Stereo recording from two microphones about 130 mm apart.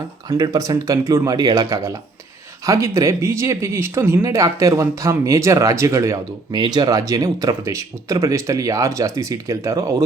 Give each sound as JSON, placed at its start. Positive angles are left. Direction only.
{"t": 0.3, "sound": "speech", "side_deg": -30}